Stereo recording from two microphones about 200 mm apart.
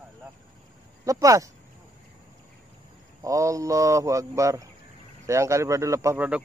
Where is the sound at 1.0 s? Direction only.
15° right (ahead or behind).